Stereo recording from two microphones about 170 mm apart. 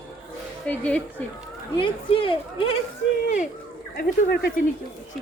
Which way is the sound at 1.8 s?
30° left (ahead or behind).